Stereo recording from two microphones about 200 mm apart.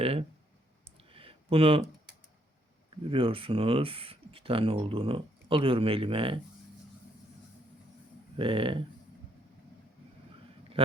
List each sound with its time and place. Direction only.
0.0 s speech: 30° right (ahead or behind)
0.9 s a sound: 25° right (ahead or behind)
3.1 s speech: 25° right (ahead or behind)
8.4 s speech: 25° right (ahead or behind)